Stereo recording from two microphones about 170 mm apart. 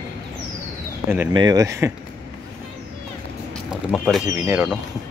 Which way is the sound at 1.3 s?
25° right (ahead or behind).